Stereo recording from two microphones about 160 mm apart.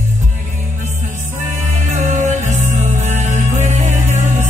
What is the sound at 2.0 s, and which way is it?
Music, 50° right (ahead or behind).